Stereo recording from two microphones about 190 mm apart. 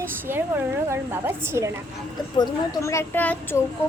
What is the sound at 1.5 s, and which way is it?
Speech, 15° right (ahead or behind).